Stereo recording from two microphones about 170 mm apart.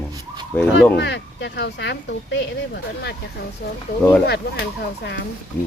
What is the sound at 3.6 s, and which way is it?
Speech, 65° left (ahead or behind).